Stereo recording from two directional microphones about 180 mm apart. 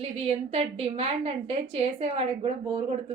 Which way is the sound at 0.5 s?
35° right (ahead or behind).